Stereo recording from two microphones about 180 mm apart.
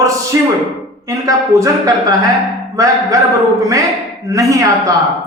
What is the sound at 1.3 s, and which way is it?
Speech, 20° right (ahead or behind).